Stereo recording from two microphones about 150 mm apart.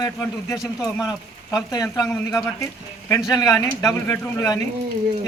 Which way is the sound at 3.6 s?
25° left (ahead or behind).